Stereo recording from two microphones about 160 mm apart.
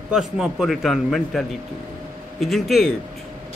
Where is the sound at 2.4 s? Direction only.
Centre (ahead or behind).